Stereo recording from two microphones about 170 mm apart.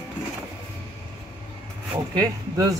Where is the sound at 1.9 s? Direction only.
25° right (ahead or behind).